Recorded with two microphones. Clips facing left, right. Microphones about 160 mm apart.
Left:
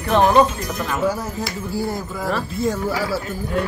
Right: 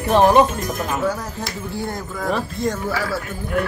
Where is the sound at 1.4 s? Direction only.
5° left (ahead or behind).